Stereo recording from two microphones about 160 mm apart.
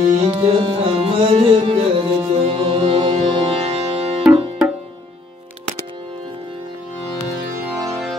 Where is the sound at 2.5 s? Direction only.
35° right (ahead or behind).